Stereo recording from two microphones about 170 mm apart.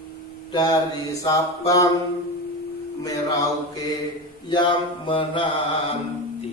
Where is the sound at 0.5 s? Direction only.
20° left (ahead or behind).